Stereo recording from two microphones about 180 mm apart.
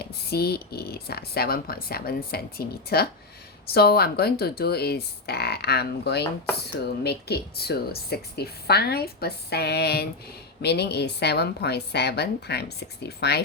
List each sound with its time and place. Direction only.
0.0 s a woman's voice: 60° left (ahead or behind)